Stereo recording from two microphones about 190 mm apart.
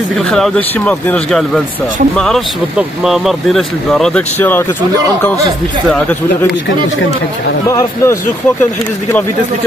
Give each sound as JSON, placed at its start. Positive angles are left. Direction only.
{"t": 0.3, "sound": "speech", "side_deg": 5}
{"t": 7.6, "sound": "speech", "side_deg": 15}